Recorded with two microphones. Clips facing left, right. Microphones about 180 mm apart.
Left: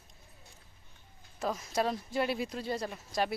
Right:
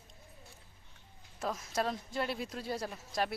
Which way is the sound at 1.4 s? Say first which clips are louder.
Left 3 dB; centre (ahead or behind).